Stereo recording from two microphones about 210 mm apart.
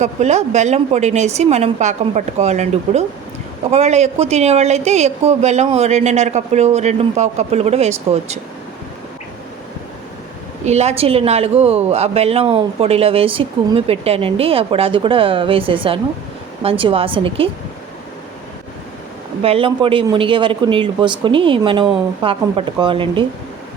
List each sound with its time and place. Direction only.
0.0 s speech: 35° right (ahead or behind)
10.7 s speech: 30° right (ahead or behind)
19.4 s speech: 25° right (ahead or behind)